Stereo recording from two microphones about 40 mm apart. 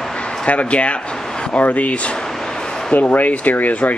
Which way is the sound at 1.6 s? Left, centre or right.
Left.